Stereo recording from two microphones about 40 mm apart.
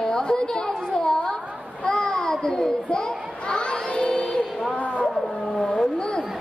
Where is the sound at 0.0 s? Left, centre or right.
Centre.